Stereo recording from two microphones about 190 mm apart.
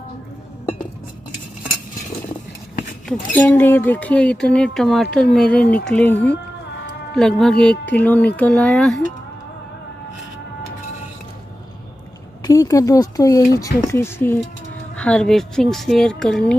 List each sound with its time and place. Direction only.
3.1 s speech: 10° left (ahead or behind)
7.2 s speech: centre (ahead or behind)
12.4 s speech: 20° left (ahead or behind)